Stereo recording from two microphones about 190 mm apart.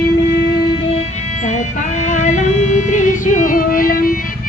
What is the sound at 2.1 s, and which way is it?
Music, 40° left (ahead or behind).